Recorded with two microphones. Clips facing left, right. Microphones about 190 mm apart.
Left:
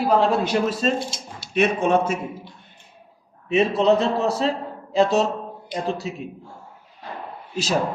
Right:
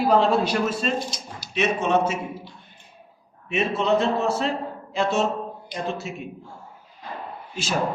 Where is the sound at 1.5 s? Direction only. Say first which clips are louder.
Left 3 dB; 55° left (ahead or behind).